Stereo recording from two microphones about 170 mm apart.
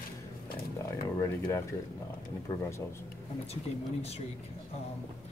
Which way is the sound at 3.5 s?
35° left (ahead or behind).